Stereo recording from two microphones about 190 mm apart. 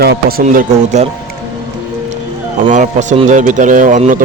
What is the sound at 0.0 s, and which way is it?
Speech, 55° right (ahead or behind).